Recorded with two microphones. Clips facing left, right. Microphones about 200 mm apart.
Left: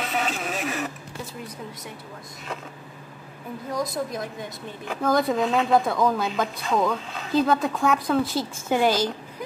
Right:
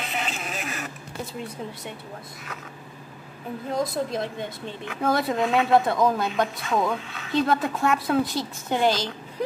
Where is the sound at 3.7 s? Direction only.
25° right (ahead or behind).